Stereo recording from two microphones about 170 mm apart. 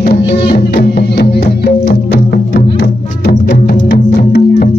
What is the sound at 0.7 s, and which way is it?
Music, 75° left (ahead or behind).